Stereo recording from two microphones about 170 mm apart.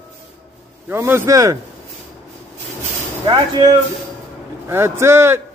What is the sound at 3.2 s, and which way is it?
Speech, 20° right (ahead or behind).